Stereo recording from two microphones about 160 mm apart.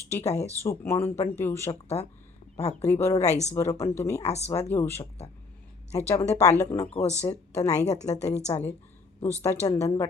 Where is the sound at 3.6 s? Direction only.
15° left (ahead or behind).